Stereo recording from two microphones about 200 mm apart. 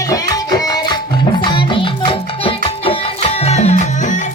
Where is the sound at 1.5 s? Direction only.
25° left (ahead or behind).